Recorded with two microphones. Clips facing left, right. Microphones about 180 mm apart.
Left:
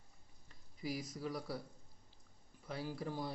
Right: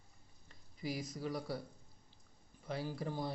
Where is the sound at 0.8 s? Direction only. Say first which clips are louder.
Right 1 dB; centre (ahead or behind).